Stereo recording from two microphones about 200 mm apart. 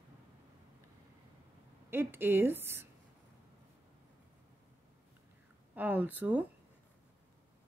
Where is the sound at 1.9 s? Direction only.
10° right (ahead or behind).